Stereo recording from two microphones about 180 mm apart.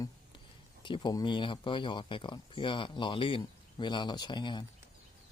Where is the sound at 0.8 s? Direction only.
25° left (ahead or behind).